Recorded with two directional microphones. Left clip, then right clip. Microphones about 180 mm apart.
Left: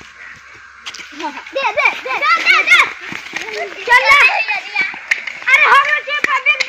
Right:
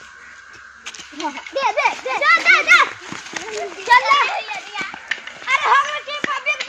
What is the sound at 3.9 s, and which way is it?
Children playing, 75° right (ahead or behind).